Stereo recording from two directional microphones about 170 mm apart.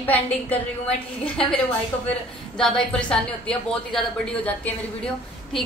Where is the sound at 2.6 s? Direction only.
5° left (ahead or behind).